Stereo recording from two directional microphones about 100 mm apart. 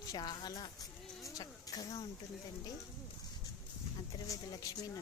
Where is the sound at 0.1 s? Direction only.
40° left (ahead or behind).